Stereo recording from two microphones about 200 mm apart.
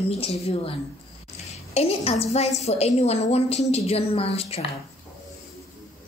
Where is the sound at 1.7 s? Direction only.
30° left (ahead or behind).